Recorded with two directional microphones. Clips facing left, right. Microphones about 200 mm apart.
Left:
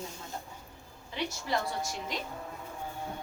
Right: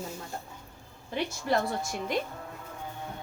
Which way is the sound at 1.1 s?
55° right (ahead or behind).